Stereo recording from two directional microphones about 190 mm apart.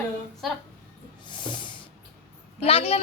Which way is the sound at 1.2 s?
25° left (ahead or behind).